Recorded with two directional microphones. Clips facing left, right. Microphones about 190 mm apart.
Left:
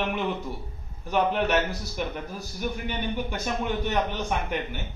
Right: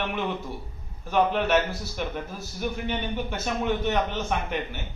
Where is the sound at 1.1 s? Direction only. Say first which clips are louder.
Right 1 dB; 15° left (ahead or behind).